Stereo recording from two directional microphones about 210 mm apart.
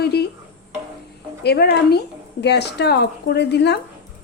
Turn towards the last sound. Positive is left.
turn(degrees=55)  # may be behind; listen again after turning